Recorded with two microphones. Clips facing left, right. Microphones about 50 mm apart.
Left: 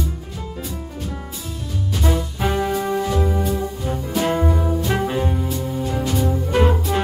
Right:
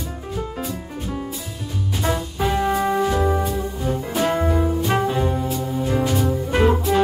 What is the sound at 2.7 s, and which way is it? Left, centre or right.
Music, right.